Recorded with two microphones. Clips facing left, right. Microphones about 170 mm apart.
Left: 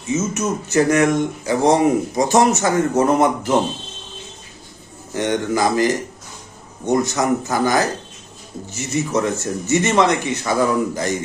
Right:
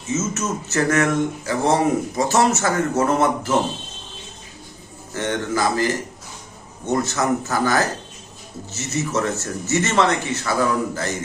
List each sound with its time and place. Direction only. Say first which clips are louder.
0.1 s a man's voice: left 3 dB; 15° left (ahead or behind)
5.1 s a man's voice: left 3 dB; 15° left (ahead or behind)